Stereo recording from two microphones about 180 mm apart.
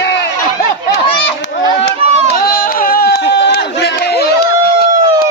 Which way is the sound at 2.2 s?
55° left (ahead or behind).